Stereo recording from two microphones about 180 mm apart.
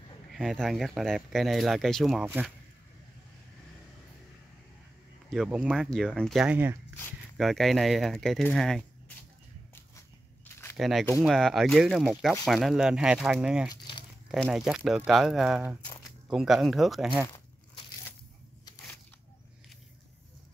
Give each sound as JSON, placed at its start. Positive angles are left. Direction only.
{"t": 0.3, "sound": "speech", "side_deg": 0}
{"t": 2.2, "sound": "speech", "side_deg": -10}
{"t": 5.3, "sound": "speech", "side_deg": -5}
{"t": 7.3, "sound": "speech", "side_deg": 0}
{"t": 9.8, "sound": "walk", "side_deg": 15}
{"t": 10.8, "sound": "speech", "side_deg": 0}
{"t": 13.7, "sound": "a sound", "side_deg": 25}
{"t": 14.3, "sound": "speech", "side_deg": 0}